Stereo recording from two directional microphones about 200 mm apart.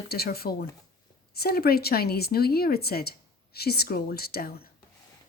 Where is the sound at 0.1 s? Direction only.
50° left (ahead or behind).